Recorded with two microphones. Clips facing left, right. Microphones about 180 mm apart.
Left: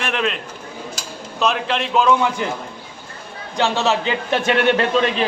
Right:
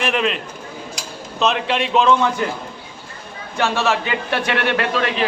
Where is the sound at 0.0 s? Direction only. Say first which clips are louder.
Right 2 dB; 5° right (ahead or behind).